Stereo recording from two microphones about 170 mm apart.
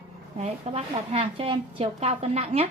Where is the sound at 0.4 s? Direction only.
40° right (ahead or behind).